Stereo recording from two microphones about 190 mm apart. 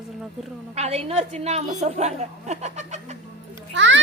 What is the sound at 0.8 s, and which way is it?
A woman's voice, 35° right (ahead or behind).